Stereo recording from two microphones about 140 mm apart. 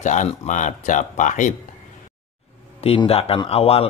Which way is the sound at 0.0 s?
60° left (ahead or behind).